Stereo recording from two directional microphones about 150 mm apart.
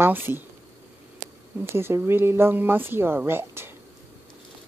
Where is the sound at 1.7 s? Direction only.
15° right (ahead or behind).